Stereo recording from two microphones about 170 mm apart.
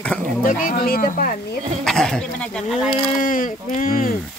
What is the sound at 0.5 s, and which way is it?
Speech, 50° left (ahead or behind).